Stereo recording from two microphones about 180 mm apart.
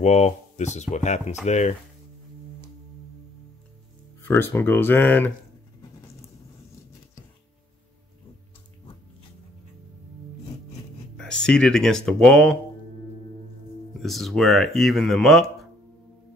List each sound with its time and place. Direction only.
0.0 s speech: 40° left (ahead or behind)
4.2 s speech: 10° left (ahead or behind)
11.1 s speech: 5° left (ahead or behind)
13.9 s speech: centre (ahead or behind)